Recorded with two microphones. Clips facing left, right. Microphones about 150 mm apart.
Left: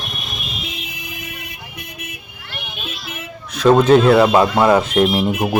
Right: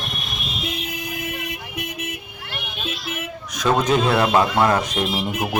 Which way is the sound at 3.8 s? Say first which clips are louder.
Left 8 dB; 60° left (ahead or behind).